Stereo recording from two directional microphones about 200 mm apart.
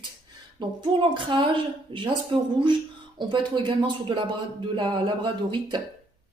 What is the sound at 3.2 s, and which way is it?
A woman's voice, 25° right (ahead or behind).